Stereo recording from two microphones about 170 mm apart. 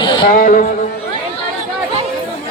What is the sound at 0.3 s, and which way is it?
Speech, 55° left (ahead or behind).